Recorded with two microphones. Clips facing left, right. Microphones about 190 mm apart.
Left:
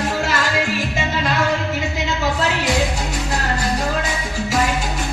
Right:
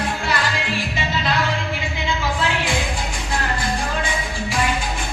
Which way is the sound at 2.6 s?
40° left (ahead or behind).